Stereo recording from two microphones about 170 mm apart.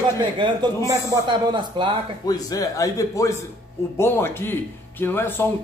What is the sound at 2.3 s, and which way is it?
A man's voice, 20° left (ahead or behind).